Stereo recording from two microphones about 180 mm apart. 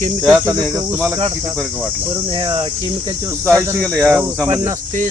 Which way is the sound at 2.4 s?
25° right (ahead or behind).